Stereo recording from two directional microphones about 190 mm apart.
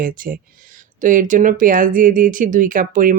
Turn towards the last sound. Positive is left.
turn(degrees=-45)  # may be behind; listen again after turning